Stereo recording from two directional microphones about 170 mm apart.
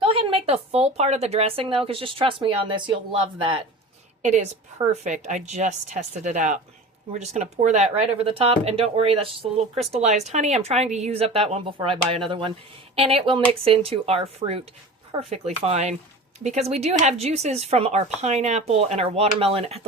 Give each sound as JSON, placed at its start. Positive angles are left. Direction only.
{"t": 0.0, "sound": "speech", "side_deg": -30}
{"t": 4.2, "sound": "a woman's voice", "side_deg": -45}
{"t": 7.6, "sound": "speech", "side_deg": -45}